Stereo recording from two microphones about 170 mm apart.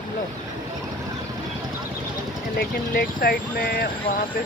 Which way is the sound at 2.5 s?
70° left (ahead or behind).